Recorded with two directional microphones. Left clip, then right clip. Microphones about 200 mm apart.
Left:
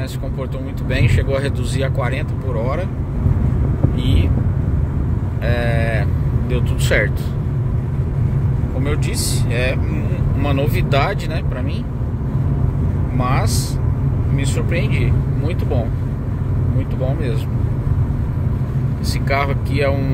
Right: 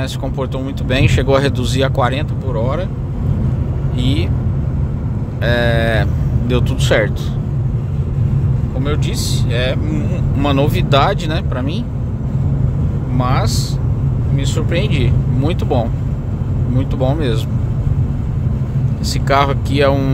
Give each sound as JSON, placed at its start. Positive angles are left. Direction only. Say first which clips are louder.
{"t": 0.4, "sound": "speech", "louder": "right 5 dB", "side_deg": -30}
{"t": 2.5, "sound": "speech", "louder": "right 3 dB", "side_deg": -15}
{"t": 5.4, "sound": "speech", "louder": "right 6 dB", "side_deg": -30}
{"t": 6.8, "sound": "speech", "louder": "right 2 dB", "side_deg": -20}
{"t": 9.5, "sound": "speech", "louder": "right 2 dB", "side_deg": -15}
{"t": 10.4, "sound": "speech", "louder": "right 5 dB", "side_deg": -25}
{"t": 13.2, "sound": "speech", "louder": "right 2 dB", "side_deg": -15}
{"t": 19.2, "sound": "speech", "louder": "right 6 dB", "side_deg": -25}